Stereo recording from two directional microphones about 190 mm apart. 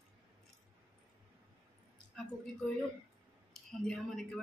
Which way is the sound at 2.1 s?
Centre (ahead or behind).